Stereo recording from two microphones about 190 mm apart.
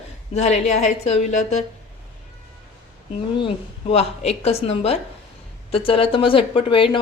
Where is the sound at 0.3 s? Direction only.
35° left (ahead or behind).